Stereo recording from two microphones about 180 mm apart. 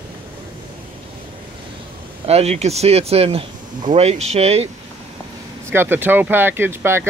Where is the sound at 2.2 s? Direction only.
35° right (ahead or behind).